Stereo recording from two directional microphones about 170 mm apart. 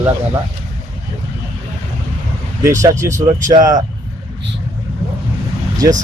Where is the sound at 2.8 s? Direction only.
20° right (ahead or behind).